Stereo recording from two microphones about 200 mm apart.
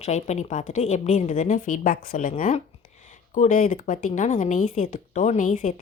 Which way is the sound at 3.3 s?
40° left (ahead or behind).